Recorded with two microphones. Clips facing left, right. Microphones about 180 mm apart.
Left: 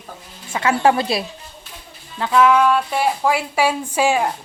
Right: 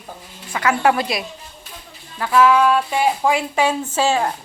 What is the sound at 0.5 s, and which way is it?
Speech, 25° left (ahead or behind).